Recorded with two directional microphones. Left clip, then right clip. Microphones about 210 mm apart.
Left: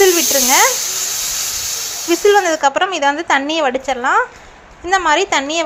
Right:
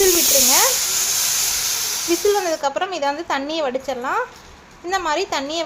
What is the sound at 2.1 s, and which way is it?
A woman's voice, 20° left (ahead or behind).